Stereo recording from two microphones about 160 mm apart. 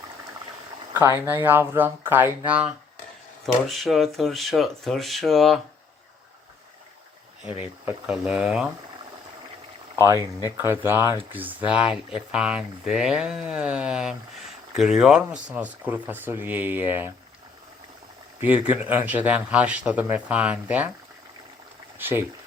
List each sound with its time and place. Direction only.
1.2 s speech: 15° right (ahead or behind)
3.4 s speech: centre (ahead or behind)
7.9 s speech: 5° right (ahead or behind)
10.6 s speech: 15° right (ahead or behind)
18.3 s speech: 10° right (ahead or behind)
21.9 s speech: 15° right (ahead or behind)